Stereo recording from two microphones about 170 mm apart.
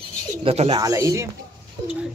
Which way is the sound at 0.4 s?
35° right (ahead or behind).